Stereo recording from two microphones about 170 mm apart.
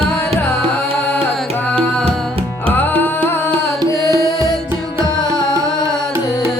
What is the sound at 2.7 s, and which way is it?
Music, 10° left (ahead or behind).